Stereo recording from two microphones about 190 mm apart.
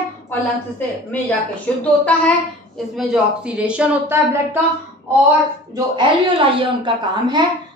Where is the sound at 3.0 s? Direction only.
5° right (ahead or behind).